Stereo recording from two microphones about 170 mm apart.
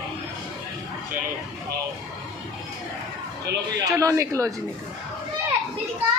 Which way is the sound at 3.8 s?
20° right (ahead or behind).